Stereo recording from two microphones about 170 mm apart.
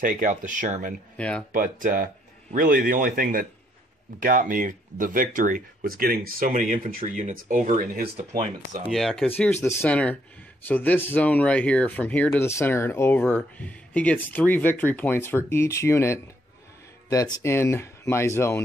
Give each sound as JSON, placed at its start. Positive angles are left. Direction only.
{"t": 0.0, "sound": "speech", "side_deg": -50}
{"t": 1.1, "sound": "speech", "side_deg": 5}
{"t": 1.5, "sound": "speech", "side_deg": -55}
{"t": 8.8, "sound": "speech", "side_deg": 0}
{"t": 9.4, "sound": "speech", "side_deg": 15}